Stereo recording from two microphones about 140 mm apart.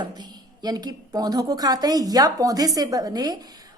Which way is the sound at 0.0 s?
30° right (ahead or behind).